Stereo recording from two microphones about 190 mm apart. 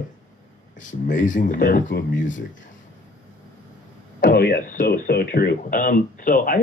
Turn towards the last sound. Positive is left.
turn(degrees=45)  # may be behind; listen again after turning